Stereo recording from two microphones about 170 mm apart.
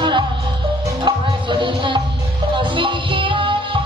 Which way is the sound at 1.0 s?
30° right (ahead or behind).